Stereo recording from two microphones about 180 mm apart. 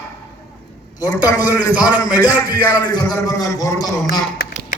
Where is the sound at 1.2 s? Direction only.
20° left (ahead or behind).